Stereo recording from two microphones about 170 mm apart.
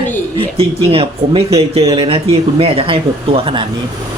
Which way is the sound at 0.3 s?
35° right (ahead or behind).